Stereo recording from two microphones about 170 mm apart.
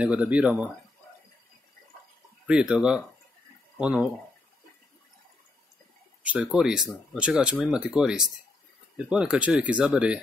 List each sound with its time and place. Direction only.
0.0 s speech: 5° right (ahead or behind)
2.4 s speech: 5° right (ahead or behind)
6.2 s speech: 5° right (ahead or behind)